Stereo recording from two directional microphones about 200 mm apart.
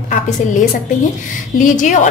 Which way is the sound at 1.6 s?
40° left (ahead or behind).